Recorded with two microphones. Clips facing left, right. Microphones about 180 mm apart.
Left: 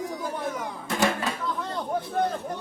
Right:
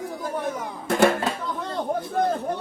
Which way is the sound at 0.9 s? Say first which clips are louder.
Right 6 dB; 55° right (ahead or behind).